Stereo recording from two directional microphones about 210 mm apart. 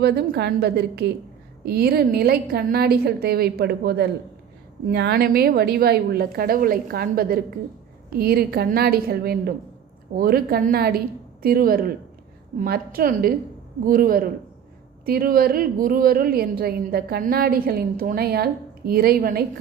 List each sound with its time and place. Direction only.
0.0 s a woman's voice: 50° right (ahead or behind)